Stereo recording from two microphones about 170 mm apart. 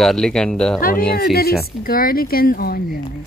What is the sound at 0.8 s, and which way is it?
Speech, 55° left (ahead or behind).